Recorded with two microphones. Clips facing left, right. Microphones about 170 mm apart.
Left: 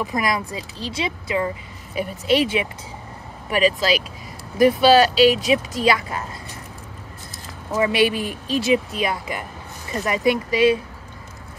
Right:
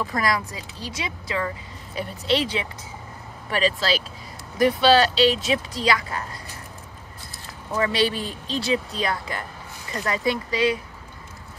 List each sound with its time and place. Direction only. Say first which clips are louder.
0.0 s speech: left 1 dB; 20° left (ahead or behind)
7.8 s speech: left 4 dB; 15° left (ahead or behind)